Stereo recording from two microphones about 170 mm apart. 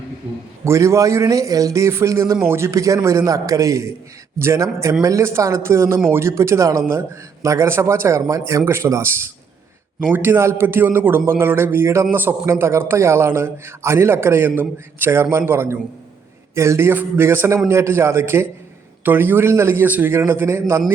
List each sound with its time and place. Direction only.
0.6 s a man's voice: 15° right (ahead or behind)
10.1 s a man's voice: 15° right (ahead or behind)